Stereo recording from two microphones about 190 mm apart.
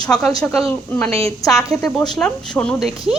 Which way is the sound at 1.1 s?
15° left (ahead or behind).